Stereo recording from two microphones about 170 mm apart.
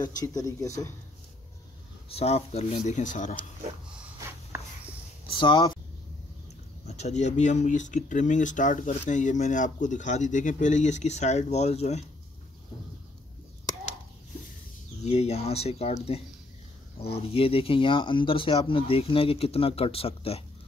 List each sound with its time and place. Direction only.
0.0 s speech: 20° left (ahead or behind)
2.0 s speech: 35° left (ahead or behind)
4.2 s a sound: 15° right (ahead or behind)
5.3 s speech: 30° left (ahead or behind)
6.9 s speech: 40° left (ahead or behind)
15.0 s speech: 40° left (ahead or behind)